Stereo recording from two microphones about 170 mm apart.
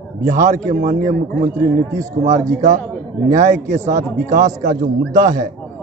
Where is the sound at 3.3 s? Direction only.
50° right (ahead or behind).